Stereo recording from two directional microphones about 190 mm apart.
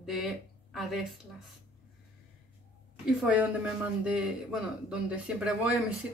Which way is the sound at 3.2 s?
5° right (ahead or behind).